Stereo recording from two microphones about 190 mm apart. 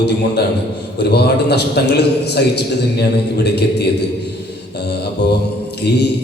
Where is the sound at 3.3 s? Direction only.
60° left (ahead or behind).